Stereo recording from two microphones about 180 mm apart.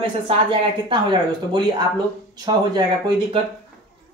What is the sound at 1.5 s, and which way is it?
Speech, 25° right (ahead or behind).